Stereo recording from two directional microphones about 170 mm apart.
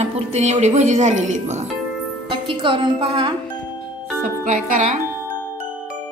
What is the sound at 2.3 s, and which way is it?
Speech, 30° right (ahead or behind).